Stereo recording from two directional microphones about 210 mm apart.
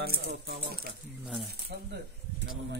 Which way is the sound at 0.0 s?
50° right (ahead or behind).